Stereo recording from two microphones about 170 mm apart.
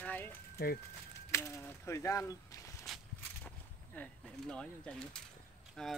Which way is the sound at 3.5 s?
5° left (ahead or behind).